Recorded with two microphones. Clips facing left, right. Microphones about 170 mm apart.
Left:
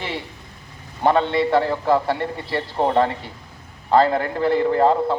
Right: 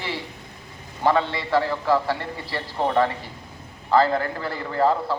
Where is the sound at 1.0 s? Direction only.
20° left (ahead or behind).